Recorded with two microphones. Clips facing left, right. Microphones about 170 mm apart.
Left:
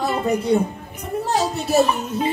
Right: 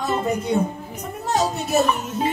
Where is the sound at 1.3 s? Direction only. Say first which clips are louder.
Even; 30° left (ahead or behind).